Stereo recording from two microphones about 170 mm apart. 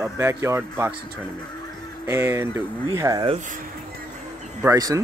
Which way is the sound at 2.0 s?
15° right (ahead or behind).